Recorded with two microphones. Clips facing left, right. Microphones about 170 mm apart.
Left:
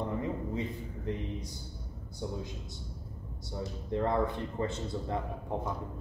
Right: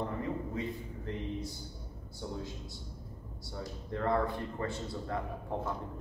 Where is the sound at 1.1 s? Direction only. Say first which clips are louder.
Left 4 dB; 15° left (ahead or behind).